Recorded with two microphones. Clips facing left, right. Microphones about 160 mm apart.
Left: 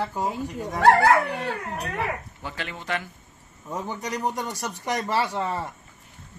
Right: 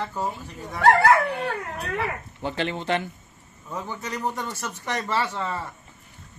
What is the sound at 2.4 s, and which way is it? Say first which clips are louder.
Speech: right 7 dB; 25° right (ahead or behind).